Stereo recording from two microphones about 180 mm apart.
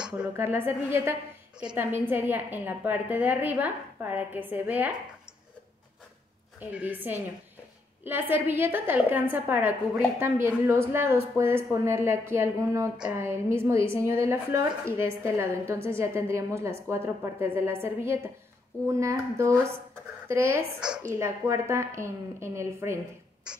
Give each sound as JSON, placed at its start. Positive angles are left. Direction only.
{"t": 0.0, "sound": "speech", "side_deg": -10}
{"t": 6.6, "sound": "speech", "side_deg": -10}